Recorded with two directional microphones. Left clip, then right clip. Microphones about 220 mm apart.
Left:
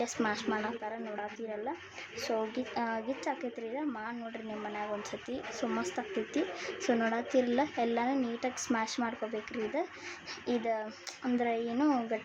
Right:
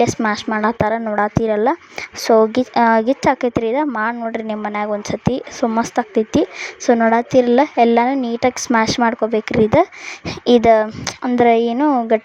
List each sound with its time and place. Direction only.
0.0 s a woman's voice: 40° right (ahead or behind)